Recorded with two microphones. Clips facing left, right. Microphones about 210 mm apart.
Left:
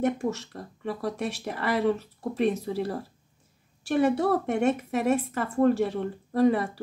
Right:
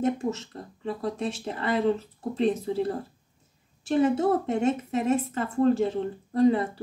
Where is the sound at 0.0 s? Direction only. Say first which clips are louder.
Even; 25° right (ahead or behind).